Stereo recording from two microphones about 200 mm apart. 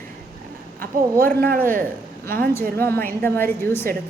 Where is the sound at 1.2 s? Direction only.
45° right (ahead or behind).